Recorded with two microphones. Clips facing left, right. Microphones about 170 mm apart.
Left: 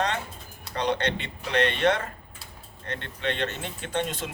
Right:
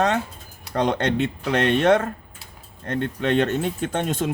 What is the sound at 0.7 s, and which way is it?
Speech, 50° right (ahead or behind).